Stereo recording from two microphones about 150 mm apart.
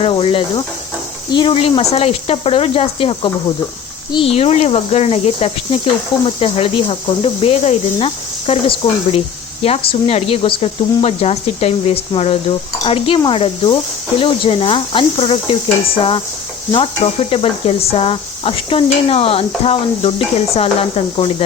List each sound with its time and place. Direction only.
0.0 s speech: 35° left (ahead or behind)
16.7 s speech: 40° left (ahead or behind)